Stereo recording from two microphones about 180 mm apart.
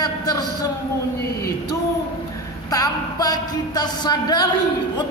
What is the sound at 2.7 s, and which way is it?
A woman's voice, 20° left (ahead or behind).